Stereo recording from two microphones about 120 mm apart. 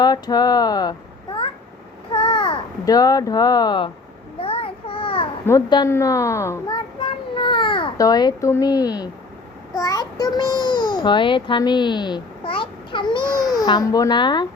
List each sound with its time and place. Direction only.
0.0 s a child's voice: 35° left (ahead or behind)
4.4 s a sound: 50° left (ahead or behind)
5.6 s speech: 35° left (ahead or behind)
5.9 s speech: 25° left (ahead or behind)
7.3 s baby cry: 45° left (ahead or behind)
7.9 s a child's voice: 30° left (ahead or behind)